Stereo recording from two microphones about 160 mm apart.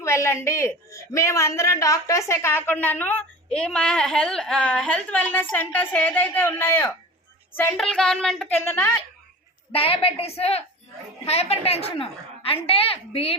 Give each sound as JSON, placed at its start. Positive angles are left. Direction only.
{"t": 0.0, "sound": "a man's voice", "side_deg": 15}
{"t": 7.7, "sound": "speech", "side_deg": 5}
{"t": 9.7, "sound": "a woman's voice", "side_deg": 35}